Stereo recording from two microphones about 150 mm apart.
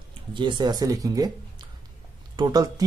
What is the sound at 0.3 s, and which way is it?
Speech, 30° right (ahead or behind).